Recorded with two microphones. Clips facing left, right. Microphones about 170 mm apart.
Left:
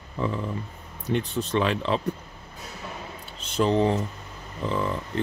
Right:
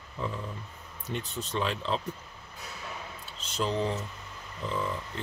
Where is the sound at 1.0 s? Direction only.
70° left (ahead or behind).